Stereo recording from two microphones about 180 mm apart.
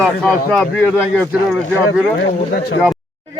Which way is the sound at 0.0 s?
Centre (ahead or behind).